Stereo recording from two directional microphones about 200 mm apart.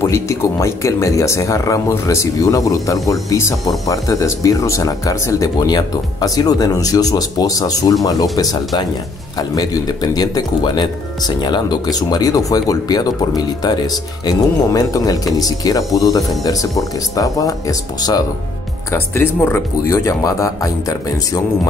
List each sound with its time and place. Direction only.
0.0 s speech: 15° left (ahead or behind)